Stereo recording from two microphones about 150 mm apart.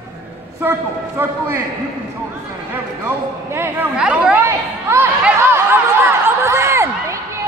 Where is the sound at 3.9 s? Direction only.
5° right (ahead or behind).